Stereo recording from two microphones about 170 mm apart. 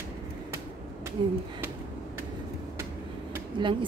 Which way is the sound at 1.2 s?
25° right (ahead or behind).